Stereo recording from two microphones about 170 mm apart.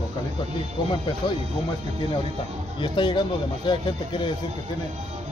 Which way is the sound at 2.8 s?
30° left (ahead or behind).